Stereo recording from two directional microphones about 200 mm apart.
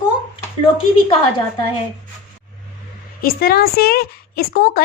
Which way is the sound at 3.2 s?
50° left (ahead or behind).